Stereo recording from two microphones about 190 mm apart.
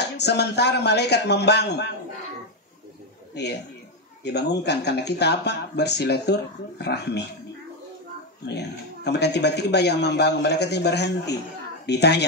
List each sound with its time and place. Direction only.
0.0 s speech: 60° left (ahead or behind)
3.4 s speech: 60° left (ahead or behind)
8.5 s speech: 60° left (ahead or behind)